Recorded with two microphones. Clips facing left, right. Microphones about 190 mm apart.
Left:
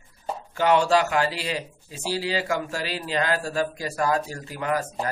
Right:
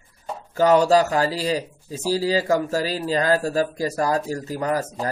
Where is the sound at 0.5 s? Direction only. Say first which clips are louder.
Right 4 dB; 40° right (ahead or behind).